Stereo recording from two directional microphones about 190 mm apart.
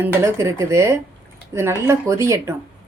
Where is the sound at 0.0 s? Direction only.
15° right (ahead or behind).